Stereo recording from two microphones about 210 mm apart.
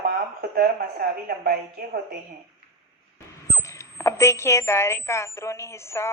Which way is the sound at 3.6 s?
15° left (ahead or behind).